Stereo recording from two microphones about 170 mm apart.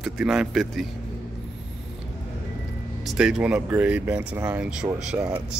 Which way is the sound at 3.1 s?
5° right (ahead or behind).